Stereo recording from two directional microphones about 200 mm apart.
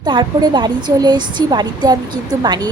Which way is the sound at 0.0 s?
20° right (ahead or behind).